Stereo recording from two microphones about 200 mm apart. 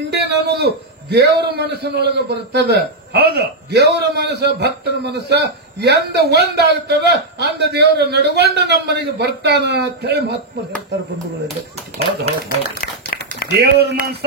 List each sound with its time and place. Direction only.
0.3 s a man's voice: 55° right (ahead or behind)
12.6 s a sound: 50° left (ahead or behind)
13.5 s a man's voice: 55° right (ahead or behind)